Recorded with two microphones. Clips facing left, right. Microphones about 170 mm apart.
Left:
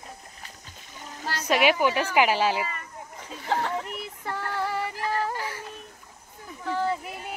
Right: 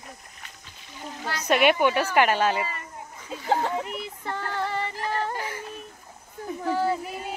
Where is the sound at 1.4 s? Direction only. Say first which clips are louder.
Right 2 dB; 5° left (ahead or behind).